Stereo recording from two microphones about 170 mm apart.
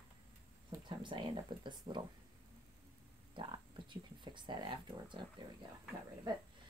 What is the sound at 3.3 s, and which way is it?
Speech, 30° right (ahead or behind).